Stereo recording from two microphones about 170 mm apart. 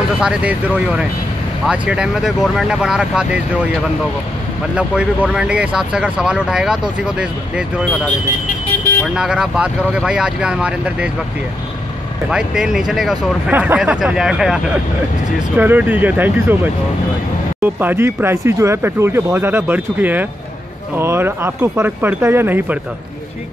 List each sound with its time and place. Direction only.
0.2 s speech: 5° right (ahead or behind)
4.7 s speech: 5° right (ahead or behind)
9.0 s speech: 5° right (ahead or behind)
12.3 s speech: 5° right (ahead or behind)
17.7 s speech: 10° right (ahead or behind)